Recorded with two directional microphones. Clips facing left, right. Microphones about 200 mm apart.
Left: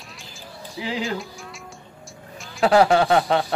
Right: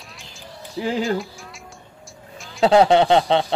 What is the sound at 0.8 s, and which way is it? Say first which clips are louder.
Speech: right 6 dB; 45° right (ahead or behind).